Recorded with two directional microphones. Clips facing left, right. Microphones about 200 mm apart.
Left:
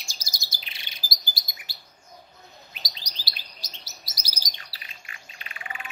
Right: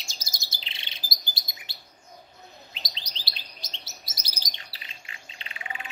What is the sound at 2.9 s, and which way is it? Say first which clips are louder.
Chirp: even; 25° right (ahead or behind).